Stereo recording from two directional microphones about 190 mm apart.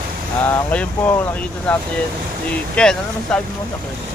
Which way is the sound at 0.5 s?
10° left (ahead or behind).